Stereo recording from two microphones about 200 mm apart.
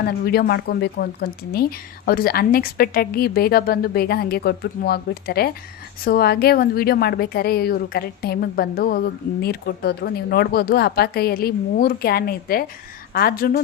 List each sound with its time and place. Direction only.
0.3 s a woman's voice: 50° left (ahead or behind)